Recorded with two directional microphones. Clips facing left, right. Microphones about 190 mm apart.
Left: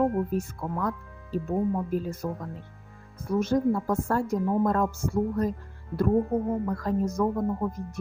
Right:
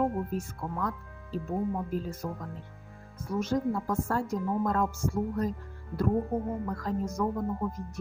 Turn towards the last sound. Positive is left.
turn(degrees=55)  # may be behind; listen again after turning